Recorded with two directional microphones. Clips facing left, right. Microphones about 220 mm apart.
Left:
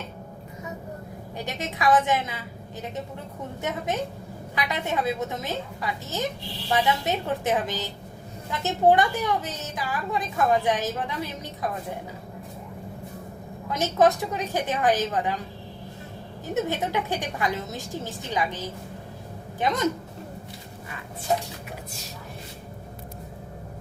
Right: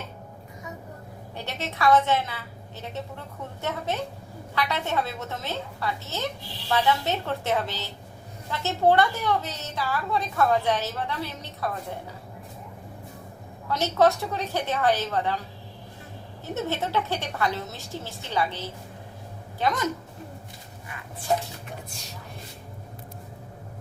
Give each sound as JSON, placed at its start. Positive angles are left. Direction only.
{"t": 1.4, "sound": "a woman's voice", "side_deg": 15}
{"t": 3.6, "sound": "a woman's voice", "side_deg": 15}
{"t": 13.7, "sound": "a woman's voice", "side_deg": 15}
{"t": 16.6, "sound": "a woman's voice", "side_deg": 15}